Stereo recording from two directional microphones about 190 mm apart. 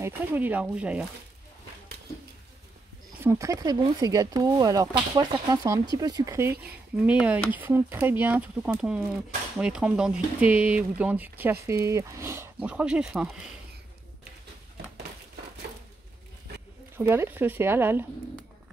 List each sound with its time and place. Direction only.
0.0 s speech: 10° right (ahead or behind)
3.2 s speech: 15° right (ahead or behind)
16.9 s speech: 10° right (ahead or behind)